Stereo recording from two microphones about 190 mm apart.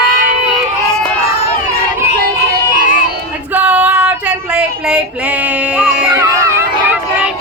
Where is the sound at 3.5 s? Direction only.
5° right (ahead or behind).